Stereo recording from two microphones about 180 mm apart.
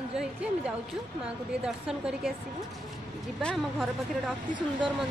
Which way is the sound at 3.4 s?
5° left (ahead or behind).